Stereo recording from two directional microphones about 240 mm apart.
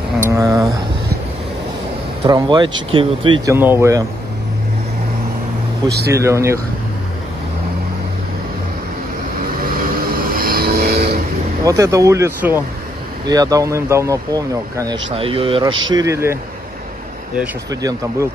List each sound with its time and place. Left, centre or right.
0.3 s speech: centre
2.2 s speech: centre
3.5 s speech: centre
5.9 s speech: right
6.1 s speech: centre
10.1 s vehicle: right
11.6 s speech: centre
17.6 s speech: centre